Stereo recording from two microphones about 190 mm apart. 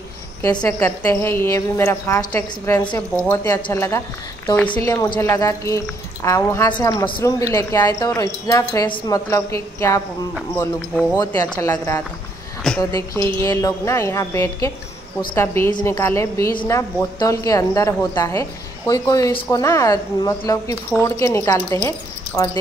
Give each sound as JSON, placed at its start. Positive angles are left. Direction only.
{"t": 0.6, "sound": "a woman's voice", "side_deg": 15}
{"t": 10.6, "sound": "speech", "side_deg": 5}
{"t": 11.1, "sound": "speech", "side_deg": 20}
{"t": 12.7, "sound": "speech", "side_deg": 0}
{"t": 13.4, "sound": "a woman's voice", "side_deg": 15}